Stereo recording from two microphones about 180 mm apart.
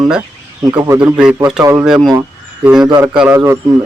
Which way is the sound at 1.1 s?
5° right (ahead or behind).